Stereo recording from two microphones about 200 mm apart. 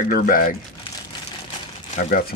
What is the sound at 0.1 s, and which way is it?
Speech, 45° left (ahead or behind).